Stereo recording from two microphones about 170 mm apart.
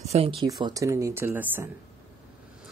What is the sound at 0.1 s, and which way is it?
Speech, 30° right (ahead or behind).